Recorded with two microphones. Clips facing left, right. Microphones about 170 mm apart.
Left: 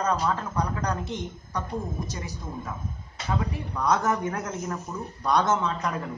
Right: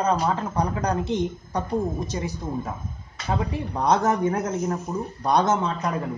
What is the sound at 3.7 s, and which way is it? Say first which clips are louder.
Speech: right 3 dB; 35° right (ahead or behind).